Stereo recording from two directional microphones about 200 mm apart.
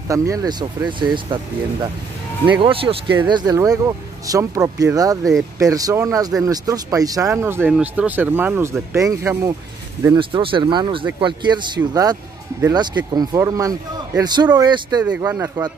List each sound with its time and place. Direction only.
0.1 s a man's voice: 15° right (ahead or behind)
2.6 s a man's voice: 25° right (ahead or behind)
10.1 s a man's voice: 25° right (ahead or behind)